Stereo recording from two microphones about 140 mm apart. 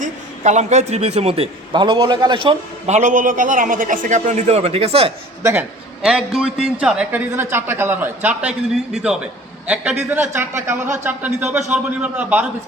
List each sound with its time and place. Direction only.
0.0 s a man's voice: 55° right (ahead or behind); by 2.9 s 40° right (ahead or behind)
2.9 s a man's voice: 65° right (ahead or behind); by 5.1 s 45° right (ahead or behind)
5.4 s a man's voice: 20° right (ahead or behind)
6.0 s a woman's voice: 5° right (ahead or behind)